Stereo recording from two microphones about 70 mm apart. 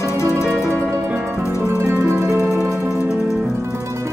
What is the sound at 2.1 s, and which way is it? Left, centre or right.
Music, right.